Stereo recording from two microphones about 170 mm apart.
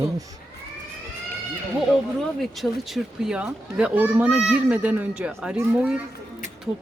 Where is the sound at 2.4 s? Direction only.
Centre (ahead or behind).